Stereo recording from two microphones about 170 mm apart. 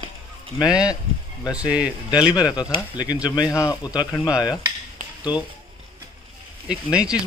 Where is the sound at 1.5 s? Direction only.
5° right (ahead or behind).